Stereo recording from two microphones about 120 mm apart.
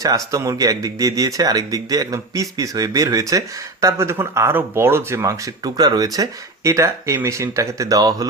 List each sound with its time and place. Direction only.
0.0 s speech: 30° right (ahead or behind)
5.6 s speech: 35° right (ahead or behind)